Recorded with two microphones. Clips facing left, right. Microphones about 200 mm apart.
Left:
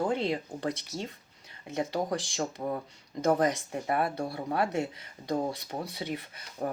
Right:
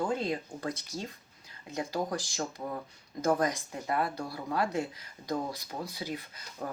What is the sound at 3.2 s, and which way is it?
Speech, 25° left (ahead or behind).